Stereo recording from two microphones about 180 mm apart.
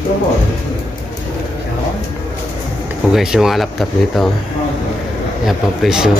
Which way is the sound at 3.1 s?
5° right (ahead or behind).